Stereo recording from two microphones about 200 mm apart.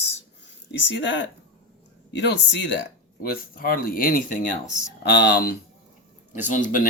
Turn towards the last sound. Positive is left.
turn(degrees=40)  # may be behind; listen again after turning